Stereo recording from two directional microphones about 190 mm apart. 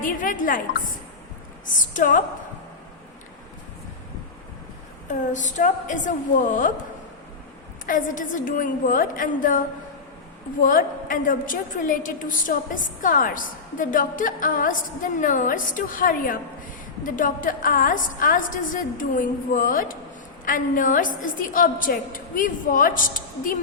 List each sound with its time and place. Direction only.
0.0 s a woman's voice: 45° left (ahead or behind)
1.6 s a woman's voice: 45° left (ahead or behind)
5.0 s a woman's voice: 40° left (ahead or behind)
7.9 s a woman's voice: 45° left (ahead or behind)